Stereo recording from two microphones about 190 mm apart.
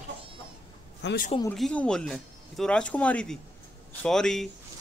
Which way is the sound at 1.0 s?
65° left (ahead or behind).